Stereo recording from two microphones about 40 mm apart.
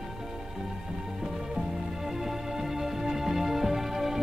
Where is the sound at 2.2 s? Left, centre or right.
Centre.